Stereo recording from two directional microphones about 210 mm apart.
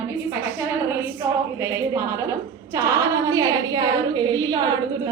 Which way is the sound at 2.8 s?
10° right (ahead or behind).